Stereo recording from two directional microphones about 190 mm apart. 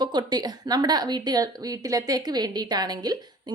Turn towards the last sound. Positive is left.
turn(degrees=-20)  # may be behind; listen again after turning